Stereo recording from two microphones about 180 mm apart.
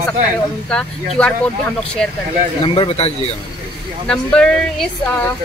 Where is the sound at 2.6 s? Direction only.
30° left (ahead or behind).